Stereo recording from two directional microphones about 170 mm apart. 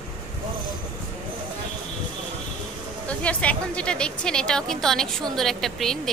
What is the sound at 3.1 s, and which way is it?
A woman's voice, 5° left (ahead or behind).